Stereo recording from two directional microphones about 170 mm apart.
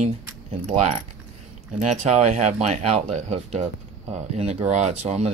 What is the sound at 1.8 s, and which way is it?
Speech, 40° right (ahead or behind).